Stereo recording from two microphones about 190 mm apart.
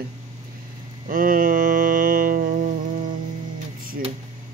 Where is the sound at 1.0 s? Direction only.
50° right (ahead or behind).